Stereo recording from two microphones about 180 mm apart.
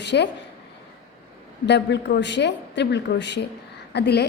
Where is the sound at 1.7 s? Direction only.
70° left (ahead or behind).